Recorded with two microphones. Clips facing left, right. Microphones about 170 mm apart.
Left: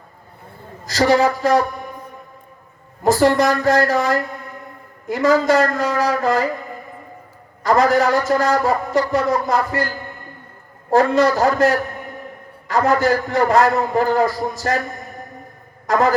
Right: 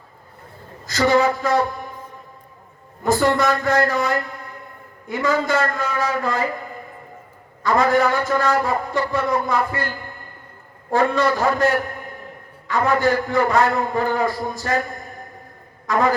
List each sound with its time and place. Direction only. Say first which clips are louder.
0.9 s a woman's voice: left 2 dB; 35° left (ahead or behind)
3.0 s a man's voice: left 3 dB; 35° left (ahead or behind)
7.6 s a man's voice: left 2 dB; 40° left (ahead or behind)
10.9 s a man's voice: left 4 dB; 40° left (ahead or behind)
15.9 s a man's voice: left 2 dB; 40° left (ahead or behind)